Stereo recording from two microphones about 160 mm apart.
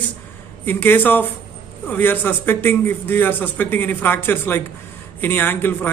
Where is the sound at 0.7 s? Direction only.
10° left (ahead or behind).